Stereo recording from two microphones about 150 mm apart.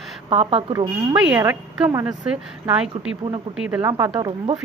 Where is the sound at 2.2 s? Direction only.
5° right (ahead or behind).